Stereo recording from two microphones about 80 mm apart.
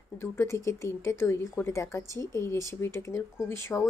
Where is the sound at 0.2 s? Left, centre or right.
Left.